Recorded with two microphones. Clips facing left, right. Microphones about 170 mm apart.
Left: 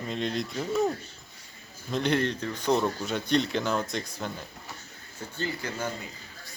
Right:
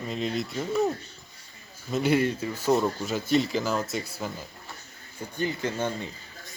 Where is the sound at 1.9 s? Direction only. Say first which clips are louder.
Right 3 dB; 5° right (ahead or behind).